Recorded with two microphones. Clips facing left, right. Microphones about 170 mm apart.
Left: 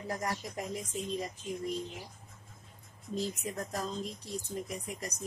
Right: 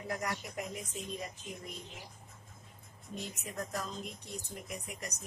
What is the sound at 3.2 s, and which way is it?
Speech, 30° left (ahead or behind).